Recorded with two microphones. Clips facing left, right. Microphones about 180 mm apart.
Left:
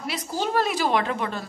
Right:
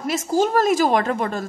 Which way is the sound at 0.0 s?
45° right (ahead or behind).